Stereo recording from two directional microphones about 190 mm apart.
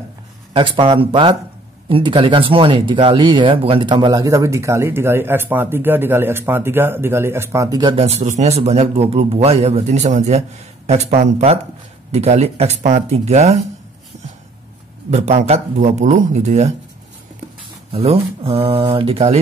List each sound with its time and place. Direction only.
0.5 s speech: 25° right (ahead or behind)
15.0 s speech: 35° right (ahead or behind)
17.9 s speech: 30° right (ahead or behind)